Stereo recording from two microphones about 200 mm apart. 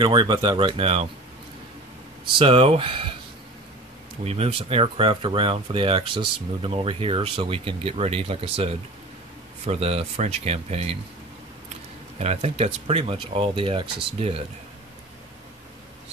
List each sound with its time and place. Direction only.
0.0 s speech: 20° right (ahead or behind)
2.3 s speech: 30° right (ahead or behind)
4.2 s speech: 30° right (ahead or behind)
9.7 s speech: 30° right (ahead or behind)
12.2 s speech: 30° right (ahead or behind)